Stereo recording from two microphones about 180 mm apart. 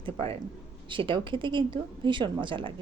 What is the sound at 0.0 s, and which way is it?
A man's voice, 30° right (ahead or behind).